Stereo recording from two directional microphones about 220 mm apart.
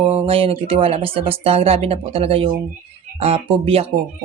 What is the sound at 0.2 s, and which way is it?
Speech, 25° right (ahead or behind).